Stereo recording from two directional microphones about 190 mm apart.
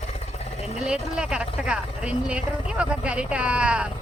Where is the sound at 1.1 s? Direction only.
5° right (ahead or behind).